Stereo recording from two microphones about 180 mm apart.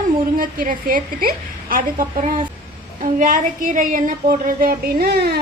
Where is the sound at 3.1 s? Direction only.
45° right (ahead or behind).